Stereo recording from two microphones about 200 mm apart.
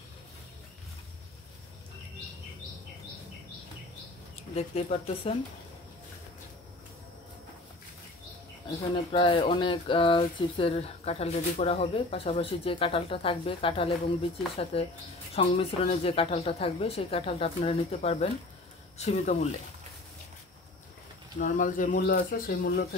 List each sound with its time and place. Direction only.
4.6 s speech: 35° left (ahead or behind)
9.1 s speech: 25° left (ahead or behind)
21.4 s speech: 40° left (ahead or behind)